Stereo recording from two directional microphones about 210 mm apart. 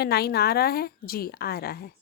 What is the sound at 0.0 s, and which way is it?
A woman's voice, 50° left (ahead or behind).